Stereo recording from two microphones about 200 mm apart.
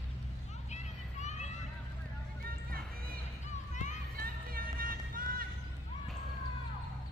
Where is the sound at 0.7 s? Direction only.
35° left (ahead or behind).